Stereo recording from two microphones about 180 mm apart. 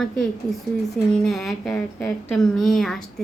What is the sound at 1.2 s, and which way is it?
A woman's voice, centre (ahead or behind).